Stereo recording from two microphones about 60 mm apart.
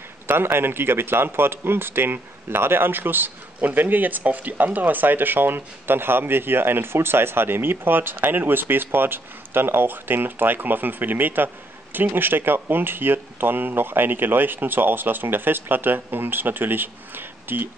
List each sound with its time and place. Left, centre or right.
0.3 s speech: right